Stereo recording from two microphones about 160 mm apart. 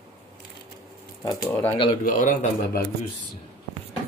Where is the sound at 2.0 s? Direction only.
55° left (ahead or behind).